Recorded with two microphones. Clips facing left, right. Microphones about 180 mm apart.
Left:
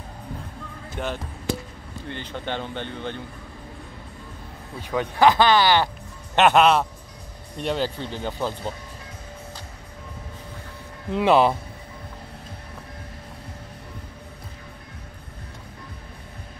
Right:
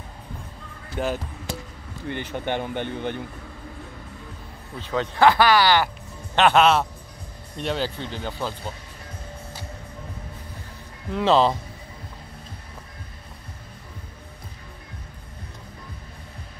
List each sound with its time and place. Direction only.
0.9 s a man's voice: 5° right (ahead or behind)
4.7 s speech: 15° left (ahead or behind)
6.5 s a man's voice: 5° right (ahead or behind)
7.6 s speech: 10° left (ahead or behind)
11.1 s speech: 15° left (ahead or behind)